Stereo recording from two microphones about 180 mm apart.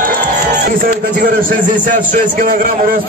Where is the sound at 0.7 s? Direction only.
50° right (ahead or behind).